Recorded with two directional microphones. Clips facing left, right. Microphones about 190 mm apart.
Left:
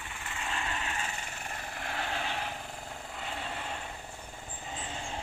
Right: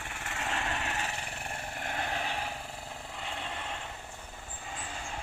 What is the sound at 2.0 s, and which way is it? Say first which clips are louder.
Vehicle: even; 10° right (ahead or behind).